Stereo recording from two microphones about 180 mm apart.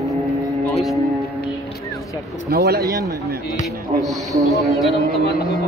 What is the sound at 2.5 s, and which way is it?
Speech, 60° right (ahead or behind).